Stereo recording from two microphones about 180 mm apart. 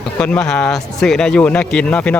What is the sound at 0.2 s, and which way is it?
Speech, 5° left (ahead or behind).